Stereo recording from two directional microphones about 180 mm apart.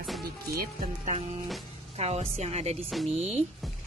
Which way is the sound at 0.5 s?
45° right (ahead or behind).